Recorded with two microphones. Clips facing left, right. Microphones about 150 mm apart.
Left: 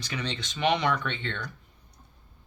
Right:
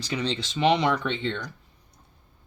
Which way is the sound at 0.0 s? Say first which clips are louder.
Right 5 dB; 30° right (ahead or behind).